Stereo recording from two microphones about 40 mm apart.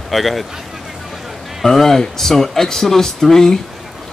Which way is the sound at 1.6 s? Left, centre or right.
Centre.